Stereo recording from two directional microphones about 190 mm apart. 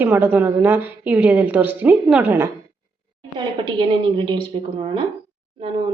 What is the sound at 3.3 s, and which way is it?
A woman's voice, 25° right (ahead or behind).